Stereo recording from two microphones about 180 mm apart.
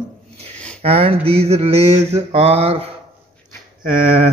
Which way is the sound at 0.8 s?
35° right (ahead or behind).